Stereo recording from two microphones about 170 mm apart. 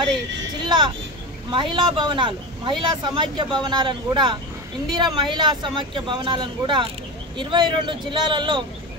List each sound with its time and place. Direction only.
0.7 s speech: 25° right (ahead or behind)